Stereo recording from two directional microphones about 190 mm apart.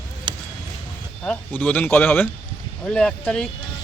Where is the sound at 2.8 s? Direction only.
5° left (ahead or behind).